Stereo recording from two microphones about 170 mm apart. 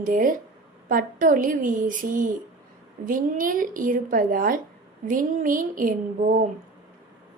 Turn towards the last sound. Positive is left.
turn(degrees=-55)  # may be behind; listen again after turning